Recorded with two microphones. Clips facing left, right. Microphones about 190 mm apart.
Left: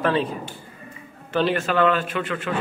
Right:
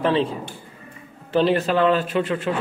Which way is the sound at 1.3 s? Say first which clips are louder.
Right 2 dB; 35° right (ahead or behind).